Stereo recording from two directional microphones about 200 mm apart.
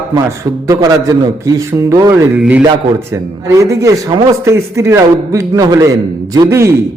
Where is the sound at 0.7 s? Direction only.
20° right (ahead or behind).